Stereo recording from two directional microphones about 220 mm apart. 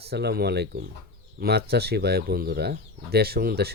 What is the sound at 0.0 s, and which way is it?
Speech, 45° right (ahead or behind).